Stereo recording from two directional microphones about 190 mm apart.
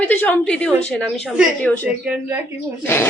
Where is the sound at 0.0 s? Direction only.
10° left (ahead or behind); by 2.6 s 10° right (ahead or behind).